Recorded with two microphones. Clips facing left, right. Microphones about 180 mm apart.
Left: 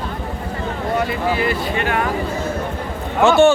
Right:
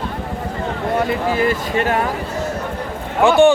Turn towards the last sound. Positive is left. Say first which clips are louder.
# right 1 dB
turn(degrees=-15)  # may be behind; listen again after turning